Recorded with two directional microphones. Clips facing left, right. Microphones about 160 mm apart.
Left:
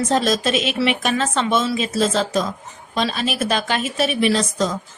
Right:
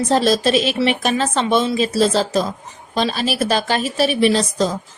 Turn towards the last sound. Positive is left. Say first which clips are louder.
# right 3 dB
turn(degrees=-35)  # may be behind; listen again after turning